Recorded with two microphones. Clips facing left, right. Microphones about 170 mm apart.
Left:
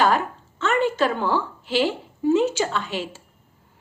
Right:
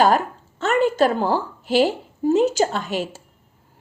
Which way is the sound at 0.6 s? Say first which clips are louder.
Right 3 dB; 40° right (ahead or behind).